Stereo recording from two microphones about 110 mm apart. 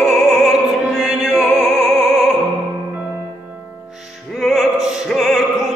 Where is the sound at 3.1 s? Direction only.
15° right (ahead or behind).